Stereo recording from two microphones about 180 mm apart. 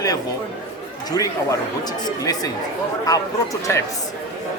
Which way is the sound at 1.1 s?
20° left (ahead or behind).